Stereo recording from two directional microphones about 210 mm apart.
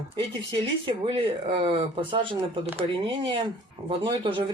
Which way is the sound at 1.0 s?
25° right (ahead or behind).